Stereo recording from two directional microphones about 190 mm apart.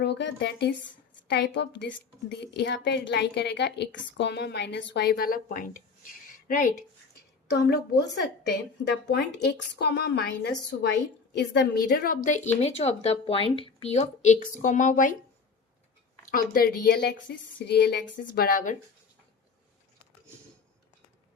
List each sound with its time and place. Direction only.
0.0 s a woman's voice: 65° left (ahead or behind); by 5.8 s 45° left (ahead or behind)
7.5 s a woman's voice: 60° left (ahead or behind)
12.6 s speech: 35° left (ahead or behind)
16.3 s a woman's voice: 50° left (ahead or behind)